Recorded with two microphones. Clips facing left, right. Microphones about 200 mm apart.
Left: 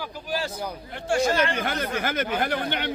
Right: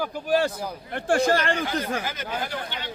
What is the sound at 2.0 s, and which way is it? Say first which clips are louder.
Speech: left 5 dB; 60° left (ahead or behind).